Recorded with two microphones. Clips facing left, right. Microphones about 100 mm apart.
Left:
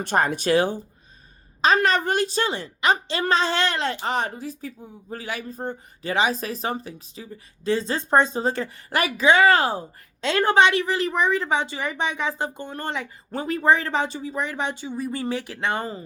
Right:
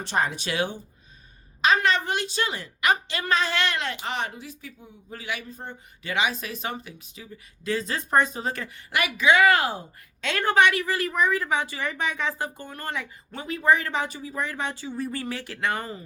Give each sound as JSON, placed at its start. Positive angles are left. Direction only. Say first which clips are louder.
{"t": 0.0, "sound": "a woman's voice", "louder": "left 4 dB", "side_deg": 50}
{"t": 13.3, "sound": "speech", "louder": "left 2 dB", "side_deg": 40}